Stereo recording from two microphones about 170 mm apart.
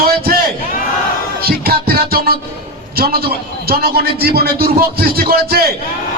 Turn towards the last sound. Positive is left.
turn(degrees=-65)  # may be behind; listen again after turning